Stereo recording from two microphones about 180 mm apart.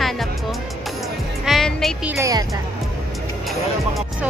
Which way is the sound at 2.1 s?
20° right (ahead or behind).